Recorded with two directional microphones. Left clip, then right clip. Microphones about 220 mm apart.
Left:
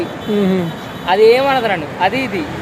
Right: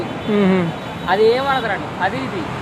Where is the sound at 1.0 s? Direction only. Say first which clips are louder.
Left 5 dB; 50° left (ahead or behind).